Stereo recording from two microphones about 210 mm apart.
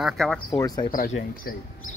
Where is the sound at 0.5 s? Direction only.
15° left (ahead or behind).